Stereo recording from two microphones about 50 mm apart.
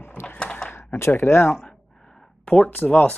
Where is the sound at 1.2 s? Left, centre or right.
Left.